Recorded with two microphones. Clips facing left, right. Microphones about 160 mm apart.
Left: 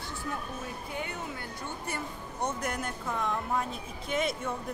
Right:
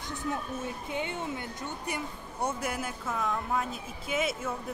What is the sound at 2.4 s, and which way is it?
Speech, 5° right (ahead or behind).